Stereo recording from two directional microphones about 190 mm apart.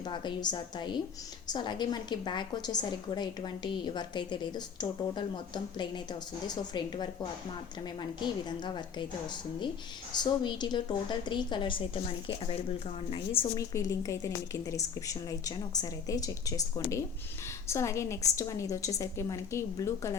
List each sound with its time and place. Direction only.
0.0 s a woman's voice: 25° left (ahead or behind)
8.2 s a woman's voice: 25° left (ahead or behind)
10.2 s a woman's voice: 25° left (ahead or behind)
13.4 s a woman's voice: 20° left (ahead or behind)